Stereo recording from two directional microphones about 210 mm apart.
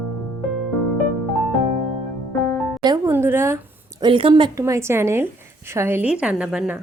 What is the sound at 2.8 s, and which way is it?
A woman's voice, 20° right (ahead or behind).